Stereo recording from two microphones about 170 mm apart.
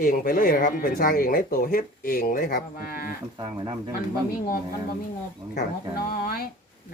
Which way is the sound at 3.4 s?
25° right (ahead or behind).